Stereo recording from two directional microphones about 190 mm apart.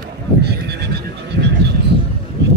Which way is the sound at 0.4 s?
60° right (ahead or behind).